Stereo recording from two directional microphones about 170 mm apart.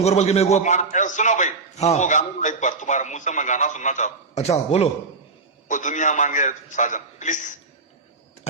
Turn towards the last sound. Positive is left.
turn(degrees=45)  # may be behind; listen again after turning